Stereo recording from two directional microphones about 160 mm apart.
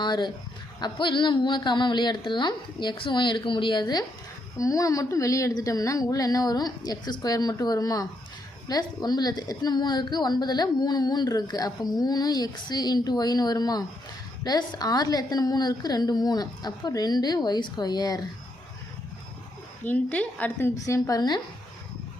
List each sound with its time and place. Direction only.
0.0 s a woman's voice: 30° left (ahead or behind)
19.8 s a woman's voice: 10° left (ahead or behind); by 21.4 s 25° left (ahead or behind)